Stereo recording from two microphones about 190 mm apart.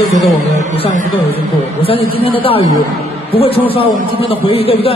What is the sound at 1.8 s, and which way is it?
A man's voice, 30° left (ahead or behind).